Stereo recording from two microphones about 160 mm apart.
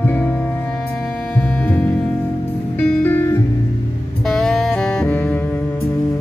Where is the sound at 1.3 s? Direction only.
10° left (ahead or behind).